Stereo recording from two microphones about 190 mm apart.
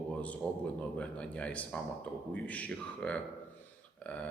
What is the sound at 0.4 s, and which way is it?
Speech, 5° left (ahead or behind).